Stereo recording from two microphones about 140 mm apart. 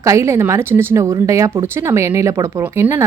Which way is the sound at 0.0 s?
20° right (ahead or behind).